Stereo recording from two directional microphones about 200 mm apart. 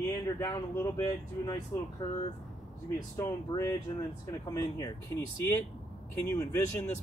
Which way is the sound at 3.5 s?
20° left (ahead or behind).